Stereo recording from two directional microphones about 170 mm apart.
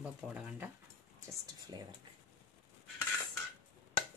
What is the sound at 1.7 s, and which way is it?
Speech, 25° right (ahead or behind).